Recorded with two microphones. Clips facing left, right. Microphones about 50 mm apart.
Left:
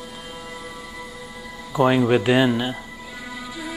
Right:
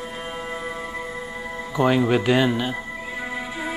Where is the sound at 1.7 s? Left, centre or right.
Centre.